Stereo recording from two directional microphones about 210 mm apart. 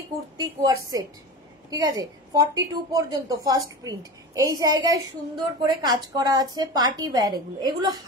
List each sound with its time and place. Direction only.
0.4 s a woman's voice: 15° right (ahead or behind)